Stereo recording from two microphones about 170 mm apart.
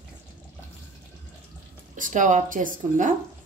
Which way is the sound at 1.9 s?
50° right (ahead or behind).